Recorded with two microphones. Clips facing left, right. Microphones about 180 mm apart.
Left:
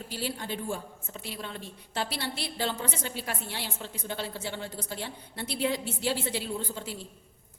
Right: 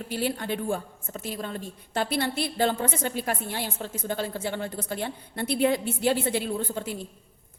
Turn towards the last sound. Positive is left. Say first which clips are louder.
# right 5 dB
turn(degrees=-55)  # may be behind; listen again after turning